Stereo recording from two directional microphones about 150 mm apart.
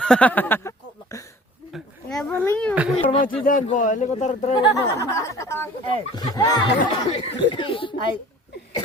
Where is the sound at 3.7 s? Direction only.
55° left (ahead or behind).